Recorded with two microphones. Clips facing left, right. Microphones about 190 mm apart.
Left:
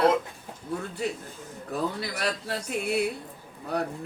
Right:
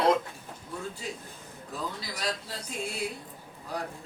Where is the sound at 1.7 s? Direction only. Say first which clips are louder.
Left 7 dB; 65° left (ahead or behind).